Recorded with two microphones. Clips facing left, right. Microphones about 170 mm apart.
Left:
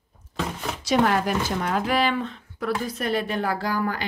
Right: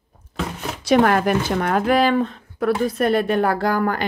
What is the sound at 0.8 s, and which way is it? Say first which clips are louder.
A woman's voice: right 5 dB; 60° right (ahead or behind).